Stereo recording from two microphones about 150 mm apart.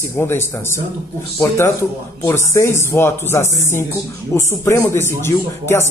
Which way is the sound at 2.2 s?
20° left (ahead or behind).